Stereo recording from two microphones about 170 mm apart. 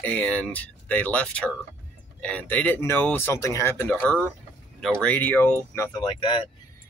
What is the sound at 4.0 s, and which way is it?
Speech, centre (ahead or behind).